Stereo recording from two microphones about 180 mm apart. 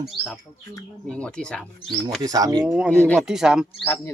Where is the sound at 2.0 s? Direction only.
20° right (ahead or behind).